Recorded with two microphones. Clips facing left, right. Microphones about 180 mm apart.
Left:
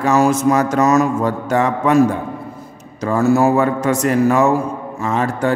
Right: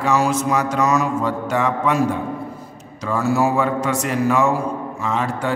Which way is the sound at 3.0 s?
50° left (ahead or behind).